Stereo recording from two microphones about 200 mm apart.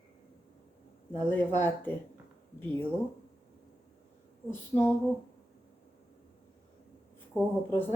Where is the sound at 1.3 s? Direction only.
10° left (ahead or behind).